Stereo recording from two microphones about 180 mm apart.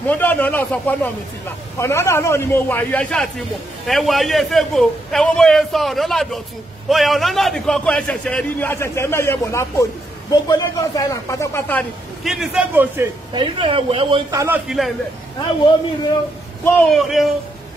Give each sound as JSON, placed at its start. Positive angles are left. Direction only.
{"t": 0.0, "sound": "a man's voice", "side_deg": 10}
{"t": 13.3, "sound": "speech", "side_deg": -25}
{"t": 14.7, "sound": "a man's voice", "side_deg": -5}
{"t": 16.6, "sound": "a man's voice", "side_deg": 10}
{"t": 17.0, "sound": "a man's voice", "side_deg": 0}